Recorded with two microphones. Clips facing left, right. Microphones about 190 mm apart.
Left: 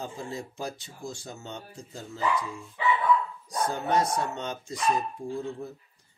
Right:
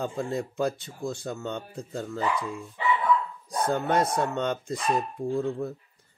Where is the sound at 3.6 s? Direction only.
55° right (ahead or behind).